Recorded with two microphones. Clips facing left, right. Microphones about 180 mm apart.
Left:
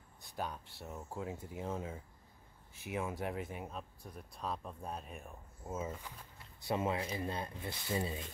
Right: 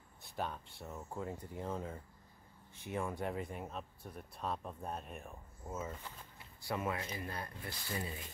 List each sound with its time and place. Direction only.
0.4 s speech: centre (ahead or behind)
6.6 s speech: 25° left (ahead or behind)